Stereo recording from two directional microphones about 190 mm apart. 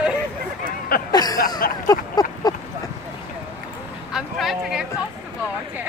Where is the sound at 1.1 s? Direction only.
20° left (ahead or behind).